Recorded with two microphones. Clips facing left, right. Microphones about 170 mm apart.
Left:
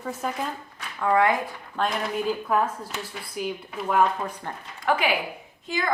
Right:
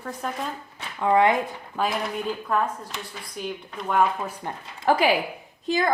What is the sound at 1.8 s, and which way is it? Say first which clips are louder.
A woman's voice: even; centre (ahead or behind).